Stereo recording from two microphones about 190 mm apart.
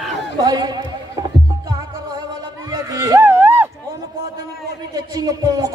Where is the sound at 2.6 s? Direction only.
15° right (ahead or behind).